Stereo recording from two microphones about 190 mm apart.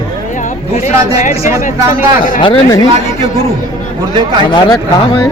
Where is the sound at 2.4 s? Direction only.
25° left (ahead or behind).